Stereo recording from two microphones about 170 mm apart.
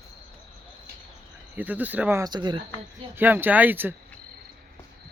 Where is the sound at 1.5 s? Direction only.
10° right (ahead or behind).